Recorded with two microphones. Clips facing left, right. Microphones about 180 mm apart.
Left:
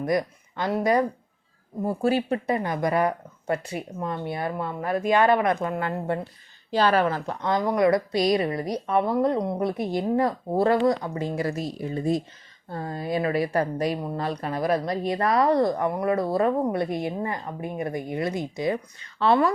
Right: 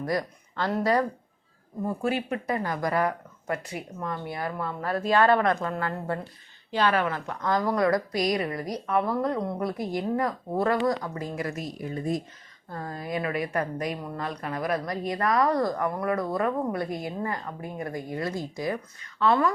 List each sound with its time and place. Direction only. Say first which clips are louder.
0.0 s speech: left 4 dB; 20° left (ahead or behind)
1.8 s speech: left 4 dB; 35° left (ahead or behind)
2.6 s a woman's voice: even; 20° left (ahead or behind)
6.7 s a woman's voice: left 4 dB; 35° left (ahead or behind)